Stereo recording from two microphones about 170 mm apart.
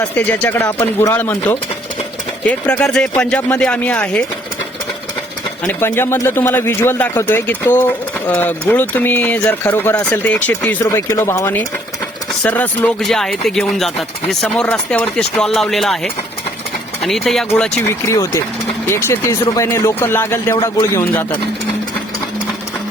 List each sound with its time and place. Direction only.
0.0 s a man's voice: 10° left (ahead or behind)
5.6 s a man's voice: 10° left (ahead or behind)
17.0 s a man's voice: centre (ahead or behind)